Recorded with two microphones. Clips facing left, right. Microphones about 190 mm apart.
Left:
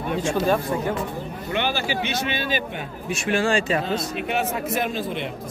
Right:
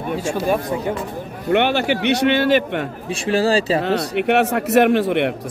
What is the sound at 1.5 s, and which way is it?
A man's voice, 65° right (ahead or behind).